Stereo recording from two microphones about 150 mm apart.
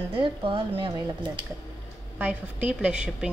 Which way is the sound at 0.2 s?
35° right (ahead or behind).